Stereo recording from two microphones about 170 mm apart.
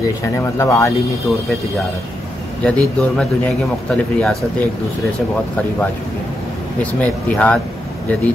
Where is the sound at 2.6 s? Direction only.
5° left (ahead or behind).